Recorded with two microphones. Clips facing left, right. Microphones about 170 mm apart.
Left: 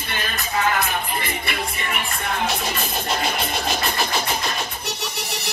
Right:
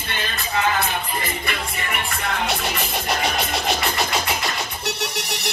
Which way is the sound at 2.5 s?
75° right (ahead or behind).